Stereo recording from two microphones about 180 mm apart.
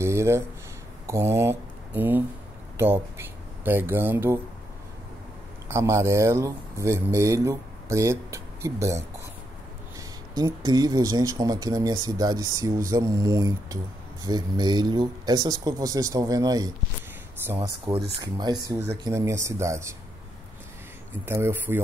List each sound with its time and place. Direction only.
0.0 s speech: 15° right (ahead or behind)
5.7 s speech: 15° right (ahead or behind)
21.3 s speech: 15° right (ahead or behind)